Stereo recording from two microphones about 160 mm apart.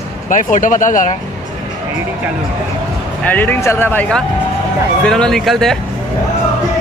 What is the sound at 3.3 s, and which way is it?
Speech, 10° left (ahead or behind).